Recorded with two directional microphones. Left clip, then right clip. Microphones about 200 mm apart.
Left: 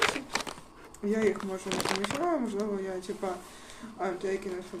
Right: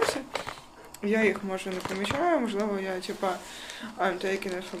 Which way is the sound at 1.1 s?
15° left (ahead or behind).